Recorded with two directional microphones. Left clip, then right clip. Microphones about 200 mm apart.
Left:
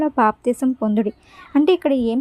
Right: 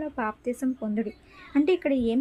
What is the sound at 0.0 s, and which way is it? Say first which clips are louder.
A woman's voice: left 13 dB; 25° left (ahead or behind).